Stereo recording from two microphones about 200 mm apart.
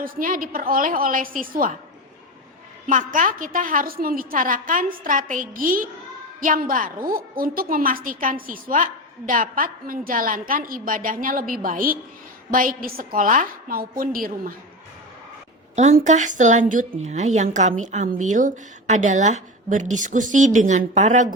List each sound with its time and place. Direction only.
0.0 s a woman's voice: 45° right (ahead or behind)
2.8 s a woman's voice: 40° right (ahead or behind)
15.7 s a woman's voice: 35° right (ahead or behind)